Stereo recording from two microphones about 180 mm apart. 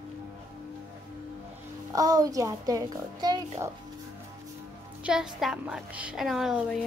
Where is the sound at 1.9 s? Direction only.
20° right (ahead or behind).